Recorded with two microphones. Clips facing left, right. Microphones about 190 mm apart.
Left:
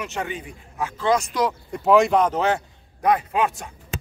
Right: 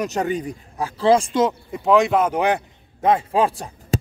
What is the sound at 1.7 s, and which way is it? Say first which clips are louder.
A man's voice: left 3 dB; centre (ahead or behind).